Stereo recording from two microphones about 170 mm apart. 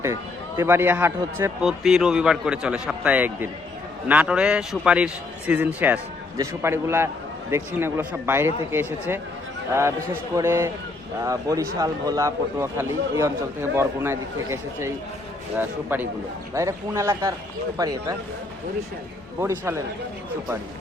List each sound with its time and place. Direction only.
0.5 s a man's voice: 15° right (ahead or behind)
1.6 s a man's voice: centre (ahead or behind); by 18.2 s 20° right (ahead or behind)
19.4 s a man's voice: 15° right (ahead or behind)